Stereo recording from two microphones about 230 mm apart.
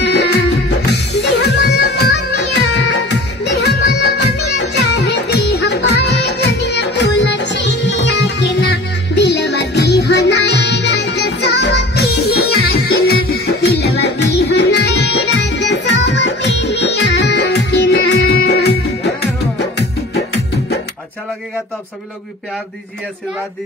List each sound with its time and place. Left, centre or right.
0.0 s music: left